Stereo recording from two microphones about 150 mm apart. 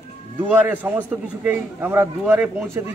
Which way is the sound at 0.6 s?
10° right (ahead or behind).